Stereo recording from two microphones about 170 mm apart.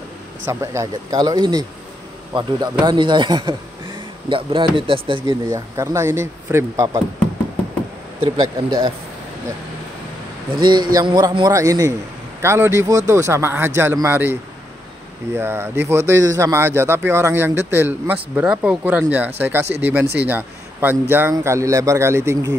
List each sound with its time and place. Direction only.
0.5 s a man's voice: 15° right (ahead or behind)
5.5 s speech: 15° right (ahead or behind)
8.2 s a man's voice: 30° right (ahead or behind)
10.5 s a man's voice: 25° right (ahead or behind)
15.3 s speech: 15° right (ahead or behind)